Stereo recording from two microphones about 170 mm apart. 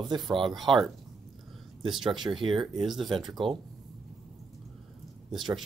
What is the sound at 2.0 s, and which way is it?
Speech, 25° right (ahead or behind).